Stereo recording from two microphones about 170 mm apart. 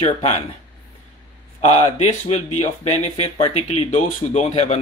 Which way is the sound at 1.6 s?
35° left (ahead or behind).